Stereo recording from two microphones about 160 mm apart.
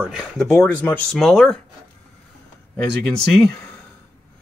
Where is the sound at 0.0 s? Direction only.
5° right (ahead or behind).